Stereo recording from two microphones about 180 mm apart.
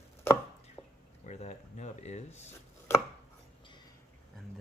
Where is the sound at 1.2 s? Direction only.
40° left (ahead or behind).